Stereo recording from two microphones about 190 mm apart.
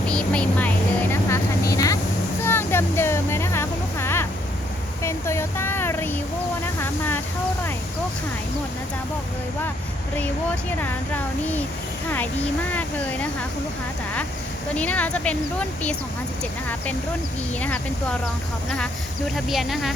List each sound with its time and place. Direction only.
0.1 s vehicle: 5° left (ahead or behind)
1.1 s vehicle: 15° left (ahead or behind)
2.4 s music: 10° left (ahead or behind)
5.0 s a sound: 15° left (ahead or behind)
10.2 s speech: 10° left (ahead or behind)
14.8 s speech: 10° left (ahead or behind)
19.5 s speech: centre (ahead or behind)